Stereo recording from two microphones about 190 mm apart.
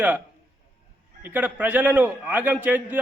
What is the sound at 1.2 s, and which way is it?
Speech, 10° right (ahead or behind).